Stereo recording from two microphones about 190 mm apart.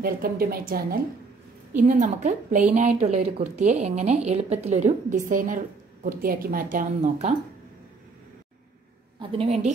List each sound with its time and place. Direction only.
0.0 s a woman's voice: 50° right (ahead or behind)
9.2 s a woman's voice: 30° right (ahead or behind)